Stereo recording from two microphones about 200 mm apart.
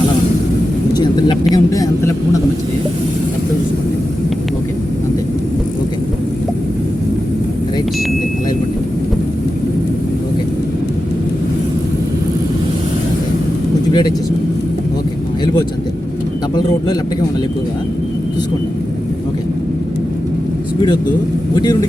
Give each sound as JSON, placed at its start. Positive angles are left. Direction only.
{"t": 0.9, "sound": "vehicle", "side_deg": 20}
{"t": 1.5, "sound": "speech", "side_deg": 15}
{"t": 21.5, "sound": "speech", "side_deg": 20}